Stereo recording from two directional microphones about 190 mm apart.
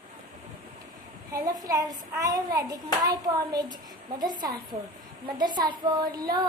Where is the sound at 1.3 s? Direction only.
20° right (ahead or behind).